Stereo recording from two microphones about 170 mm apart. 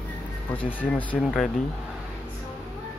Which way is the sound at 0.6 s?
10° left (ahead or behind).